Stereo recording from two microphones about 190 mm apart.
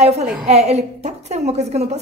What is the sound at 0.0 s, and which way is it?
A woman's voice, 35° right (ahead or behind).